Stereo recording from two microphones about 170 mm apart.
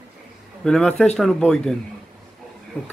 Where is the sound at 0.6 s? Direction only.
5° left (ahead or behind).